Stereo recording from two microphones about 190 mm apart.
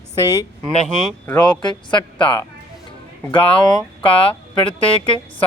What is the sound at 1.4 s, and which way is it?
Speech, 20° left (ahead or behind).